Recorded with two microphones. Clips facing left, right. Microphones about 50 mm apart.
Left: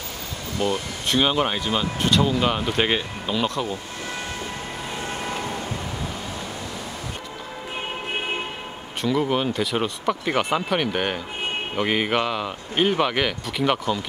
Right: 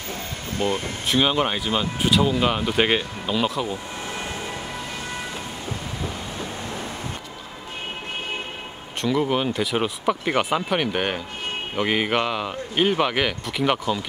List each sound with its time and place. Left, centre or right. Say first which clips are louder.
0.5 s speech: even; right
1.0 s speech: even; centre
9.0 s speech: even; centre